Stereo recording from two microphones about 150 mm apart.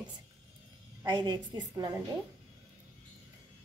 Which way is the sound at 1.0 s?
30° right (ahead or behind).